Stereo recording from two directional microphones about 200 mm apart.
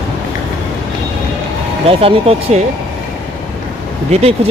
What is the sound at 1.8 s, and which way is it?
Speech, 30° right (ahead or behind).